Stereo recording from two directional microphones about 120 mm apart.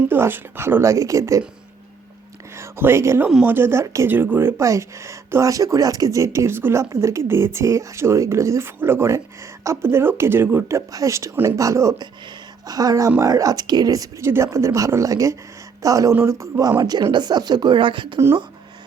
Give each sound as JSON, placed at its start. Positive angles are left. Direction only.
{"t": 0.1, "sound": "speech", "side_deg": -15}
{"t": 2.6, "sound": "speech", "side_deg": -20}